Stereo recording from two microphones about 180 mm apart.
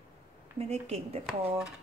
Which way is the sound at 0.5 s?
35° right (ahead or behind).